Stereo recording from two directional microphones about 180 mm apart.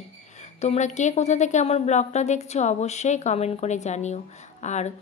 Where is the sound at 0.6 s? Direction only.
40° left (ahead or behind).